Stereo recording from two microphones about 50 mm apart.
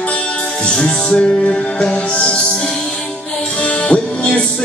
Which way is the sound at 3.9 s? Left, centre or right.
Left.